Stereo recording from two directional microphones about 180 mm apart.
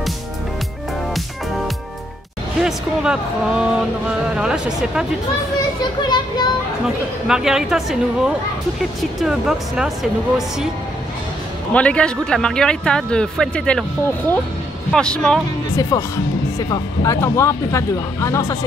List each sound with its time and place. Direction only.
2.6 s speech: 5° right (ahead or behind)
5.8 s speech: 25° left (ahead or behind)
7.2 s speech: 5° right (ahead or behind)
11.7 s speech: 5° left (ahead or behind)
14.9 s speech: 5° left (ahead or behind)
15.7 s speech: 20° left (ahead or behind)